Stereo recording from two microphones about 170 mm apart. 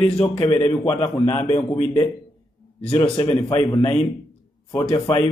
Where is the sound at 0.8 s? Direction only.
15° left (ahead or behind).